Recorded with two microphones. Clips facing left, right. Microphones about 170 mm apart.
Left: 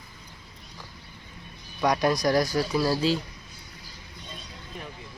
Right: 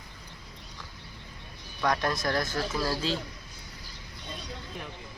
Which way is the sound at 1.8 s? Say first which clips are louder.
Left 5 dB; 15° left (ahead or behind).